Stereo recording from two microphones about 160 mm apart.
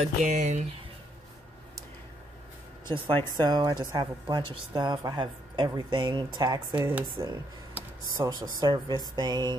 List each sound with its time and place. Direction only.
0.0 s speech: 50° right (ahead or behind)
3.4 s a woman's voice: 25° right (ahead or behind)
6.8 s a woman's voice: 15° right (ahead or behind)